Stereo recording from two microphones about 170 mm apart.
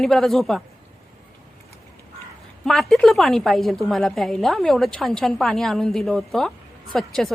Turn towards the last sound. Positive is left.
turn(degrees=0)  # may be behind; listen again after turning